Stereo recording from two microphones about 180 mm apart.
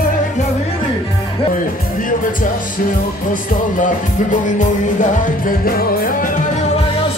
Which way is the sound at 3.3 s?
50° left (ahead or behind).